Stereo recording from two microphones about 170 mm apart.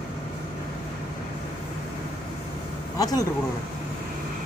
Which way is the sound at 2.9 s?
20° left (ahead or behind).